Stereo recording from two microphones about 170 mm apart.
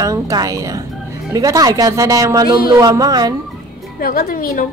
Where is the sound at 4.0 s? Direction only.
60° left (ahead or behind).